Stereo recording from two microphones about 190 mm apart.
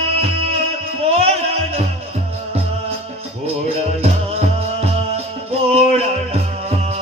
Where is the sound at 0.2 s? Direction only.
30° right (ahead or behind).